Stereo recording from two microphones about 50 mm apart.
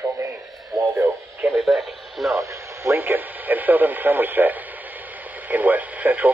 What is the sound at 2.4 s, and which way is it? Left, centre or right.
Radio, right.